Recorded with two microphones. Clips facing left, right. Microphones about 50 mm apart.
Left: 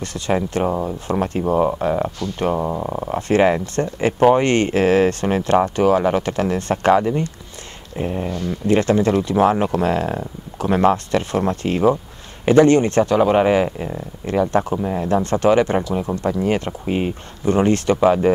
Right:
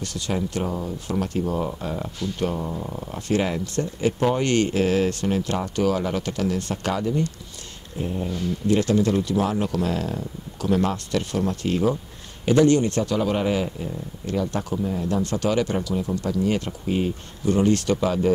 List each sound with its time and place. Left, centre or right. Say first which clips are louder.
0.5 s speech: left 7 dB; left
8.0 s a sound: left 4 dB; left
8.6 s speech: left 4 dB; left
14.3 s speech: left 8 dB; left
14.9 s speech: left 6 dB; left
17.5 s speech: left 4 dB; left